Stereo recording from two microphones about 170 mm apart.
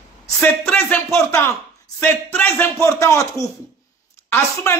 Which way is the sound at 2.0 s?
10° left (ahead or behind).